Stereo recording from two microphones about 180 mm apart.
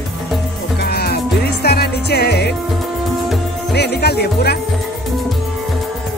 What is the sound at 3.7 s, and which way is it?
Speech, 65° left (ahead or behind).